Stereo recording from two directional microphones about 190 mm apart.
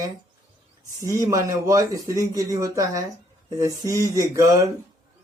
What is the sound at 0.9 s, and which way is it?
Speech, 15° right (ahead or behind).